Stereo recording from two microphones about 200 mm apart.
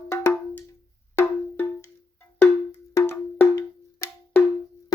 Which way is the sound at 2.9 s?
10° left (ahead or behind).